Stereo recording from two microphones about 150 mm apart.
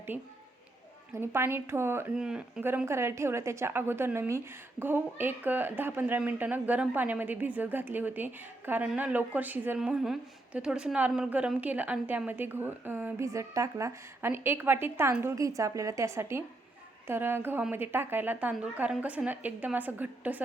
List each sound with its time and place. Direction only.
0.1 s a woman's voice: 10° right (ahead or behind)
2.1 s a woman's voice: 5° right (ahead or behind)